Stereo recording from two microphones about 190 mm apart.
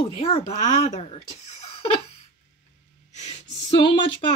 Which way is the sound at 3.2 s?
30° left (ahead or behind).